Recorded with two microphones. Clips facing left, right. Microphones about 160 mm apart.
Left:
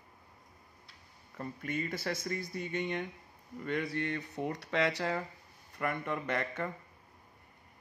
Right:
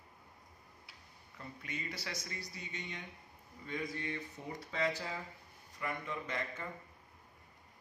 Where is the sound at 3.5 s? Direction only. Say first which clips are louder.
Left 7 dB; 65° left (ahead or behind).